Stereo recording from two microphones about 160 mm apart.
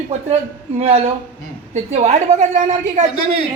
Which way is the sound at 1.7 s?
45° right (ahead or behind).